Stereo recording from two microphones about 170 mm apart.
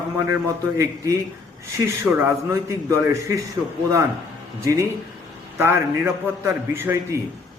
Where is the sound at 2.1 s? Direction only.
20° right (ahead or behind).